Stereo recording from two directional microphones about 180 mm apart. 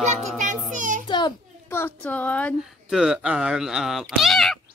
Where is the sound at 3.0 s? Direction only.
5° right (ahead or behind).